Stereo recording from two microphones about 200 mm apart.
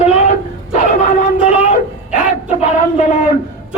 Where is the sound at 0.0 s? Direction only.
30° left (ahead or behind).